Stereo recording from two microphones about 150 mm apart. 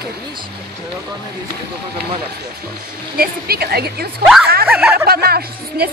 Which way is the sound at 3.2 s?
90° right.